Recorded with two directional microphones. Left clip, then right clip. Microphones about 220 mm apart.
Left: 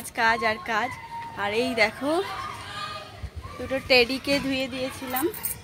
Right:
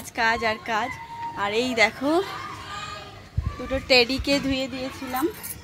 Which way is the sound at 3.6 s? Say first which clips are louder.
Right 1 dB; 10° right (ahead or behind).